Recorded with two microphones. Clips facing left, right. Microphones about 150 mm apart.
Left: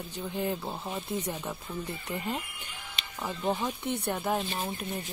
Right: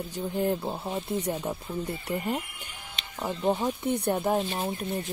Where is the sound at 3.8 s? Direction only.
35° right (ahead or behind).